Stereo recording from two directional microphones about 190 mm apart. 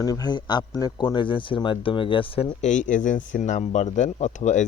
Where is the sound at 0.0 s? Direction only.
20° left (ahead or behind).